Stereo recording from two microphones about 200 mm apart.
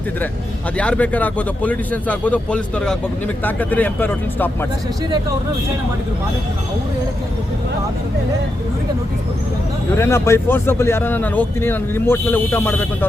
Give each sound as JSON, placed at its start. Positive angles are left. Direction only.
{"t": 0.8, "sound": "speech", "side_deg": 5}
{"t": 9.9, "sound": "speech", "side_deg": 10}